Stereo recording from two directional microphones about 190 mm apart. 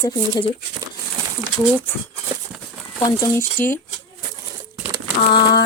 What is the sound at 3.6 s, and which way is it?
Speech, 10° left (ahead or behind).